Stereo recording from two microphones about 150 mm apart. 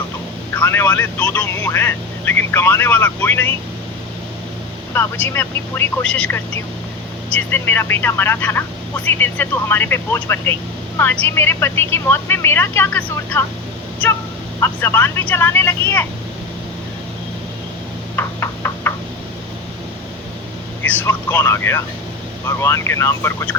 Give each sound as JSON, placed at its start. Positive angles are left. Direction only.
{"t": 0.5, "sound": "speech", "side_deg": 15}
{"t": 4.9, "sound": "speech", "side_deg": 15}
{"t": 14.6, "sound": "speech", "side_deg": 15}
{"t": 18.2, "sound": "knock", "side_deg": 15}
{"t": 20.8, "sound": "speech", "side_deg": 15}